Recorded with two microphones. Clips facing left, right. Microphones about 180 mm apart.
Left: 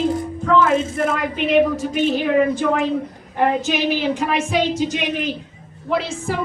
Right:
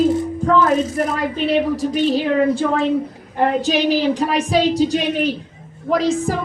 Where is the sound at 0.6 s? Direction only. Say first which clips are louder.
Even; 25° left (ahead or behind).